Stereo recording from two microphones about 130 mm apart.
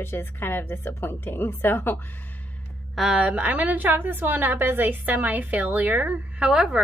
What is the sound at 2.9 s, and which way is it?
A woman's voice, 5° right (ahead or behind).